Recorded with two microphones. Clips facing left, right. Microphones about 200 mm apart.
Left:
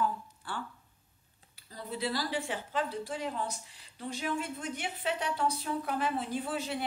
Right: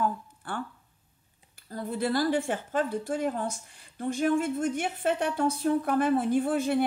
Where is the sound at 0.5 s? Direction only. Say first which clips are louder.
Right 5 dB; 55° right (ahead or behind).